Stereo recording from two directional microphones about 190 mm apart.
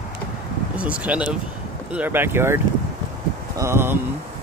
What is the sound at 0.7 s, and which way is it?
Speech, 5° right (ahead or behind).